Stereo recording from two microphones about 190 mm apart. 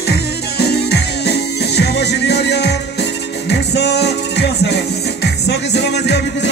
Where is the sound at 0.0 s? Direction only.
55° left (ahead or behind).